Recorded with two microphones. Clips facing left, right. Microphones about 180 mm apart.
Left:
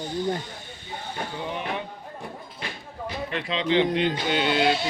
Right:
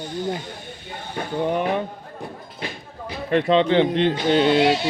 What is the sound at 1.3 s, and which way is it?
Speech, 50° right (ahead or behind).